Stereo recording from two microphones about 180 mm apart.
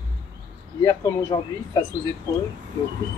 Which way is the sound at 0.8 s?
20° left (ahead or behind).